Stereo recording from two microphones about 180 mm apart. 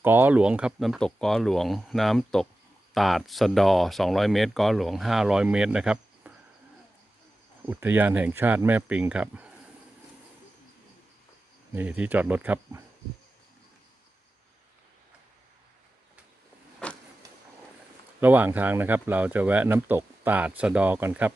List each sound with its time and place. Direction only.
0.0 s speech: 10° right (ahead or behind)
7.6 s speech: 10° right (ahead or behind)
11.7 s speech: 10° right (ahead or behind)
16.8 s power windows: 5° left (ahead or behind)
18.2 s speech: 10° right (ahead or behind)